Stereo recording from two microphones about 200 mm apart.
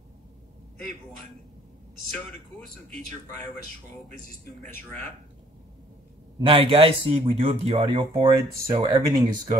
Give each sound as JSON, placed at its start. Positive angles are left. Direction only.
{"t": 6.4, "sound": "speech", "side_deg": -25}